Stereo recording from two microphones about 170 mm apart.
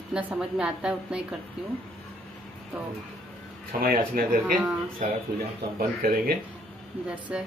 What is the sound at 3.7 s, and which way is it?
Speech, 60° right (ahead or behind).